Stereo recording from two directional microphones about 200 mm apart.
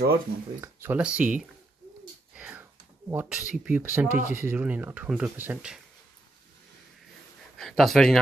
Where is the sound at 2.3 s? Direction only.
10° right (ahead or behind).